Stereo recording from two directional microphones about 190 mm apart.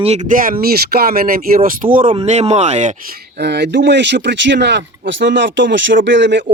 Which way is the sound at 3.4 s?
60° right (ahead or behind).